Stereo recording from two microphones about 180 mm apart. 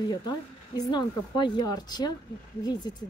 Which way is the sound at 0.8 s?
25° left (ahead or behind).